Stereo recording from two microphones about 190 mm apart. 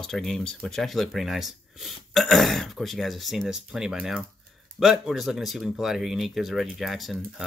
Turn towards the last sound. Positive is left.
turn(degrees=0)  # may be behind; listen again after turning